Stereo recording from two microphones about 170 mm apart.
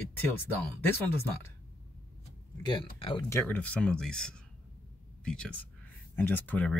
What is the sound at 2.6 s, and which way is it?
Speech, 30° left (ahead or behind).